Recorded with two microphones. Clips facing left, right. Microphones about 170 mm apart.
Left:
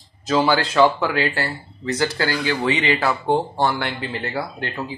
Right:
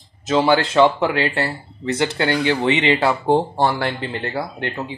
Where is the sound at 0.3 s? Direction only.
25° right (ahead or behind).